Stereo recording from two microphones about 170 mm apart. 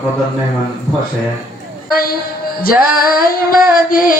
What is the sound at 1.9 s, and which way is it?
Speech, 60° left (ahead or behind).